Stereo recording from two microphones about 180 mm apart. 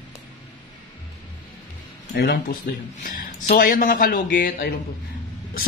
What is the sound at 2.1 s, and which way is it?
Speech, 60° left (ahead or behind).